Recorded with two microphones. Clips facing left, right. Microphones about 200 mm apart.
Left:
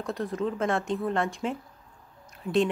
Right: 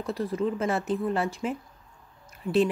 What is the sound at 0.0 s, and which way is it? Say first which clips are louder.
A woman's voice: right 2 dB; centre (ahead or behind).